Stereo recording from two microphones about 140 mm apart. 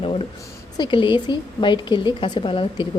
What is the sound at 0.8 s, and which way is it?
A woman's voice, 35° left (ahead or behind).